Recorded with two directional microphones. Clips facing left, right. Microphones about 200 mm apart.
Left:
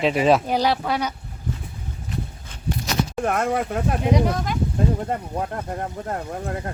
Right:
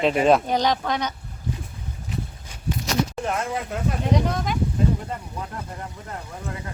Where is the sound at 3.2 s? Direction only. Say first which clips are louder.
Left 5 dB; 55° left (ahead or behind).